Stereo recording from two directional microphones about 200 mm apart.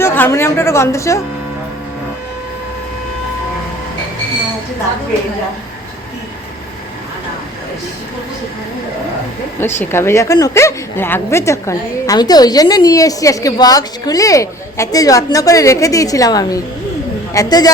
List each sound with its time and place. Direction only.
0.0 s a woman's voice: 10° left (ahead or behind)
9.6 s a woman's voice: 10° left (ahead or behind)